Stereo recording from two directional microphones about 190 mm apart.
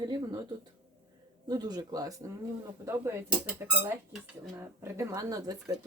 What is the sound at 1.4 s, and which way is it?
A woman's voice, 20° right (ahead or behind).